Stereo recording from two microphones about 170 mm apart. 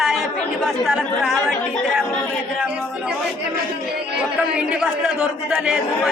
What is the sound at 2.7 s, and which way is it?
Speech, 5° right (ahead or behind).